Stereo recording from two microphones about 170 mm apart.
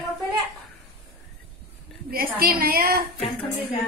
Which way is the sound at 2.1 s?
60° right (ahead or behind).